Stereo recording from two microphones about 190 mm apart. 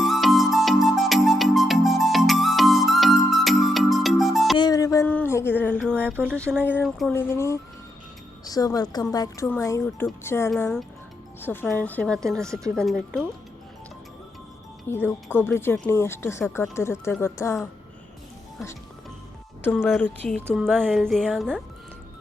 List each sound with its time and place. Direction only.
0.0 s music: centre (ahead or behind)
4.5 s a sound: 20° left (ahead or behind)
6.0 s a sound: 10° right (ahead or behind)
6.7 s speech: centre (ahead or behind)
7.1 s speech: 10° left (ahead or behind)
12.5 s speech: 15° right (ahead or behind)
12.7 s speech: centre (ahead or behind)
14.9 s speech: 10° left (ahead or behind)
19.6 s speech: 10° left (ahead or behind)